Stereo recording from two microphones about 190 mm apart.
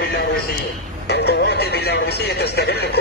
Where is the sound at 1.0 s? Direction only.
60° left (ahead or behind).